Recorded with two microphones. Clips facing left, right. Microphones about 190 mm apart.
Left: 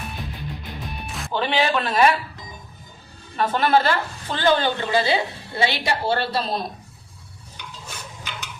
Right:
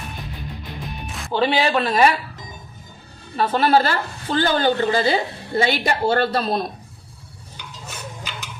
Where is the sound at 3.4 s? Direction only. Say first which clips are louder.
Right 2 dB; 35° right (ahead or behind).